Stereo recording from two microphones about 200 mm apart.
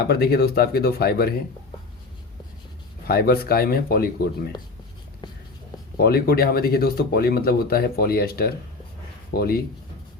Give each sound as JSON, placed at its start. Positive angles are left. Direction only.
{"t": 0.0, "sound": "speech", "side_deg": 50}
{"t": 3.1, "sound": "speech", "side_deg": 50}
{"t": 6.0, "sound": "speech", "side_deg": 50}